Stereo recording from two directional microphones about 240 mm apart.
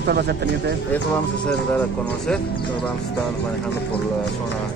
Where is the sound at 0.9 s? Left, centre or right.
Centre.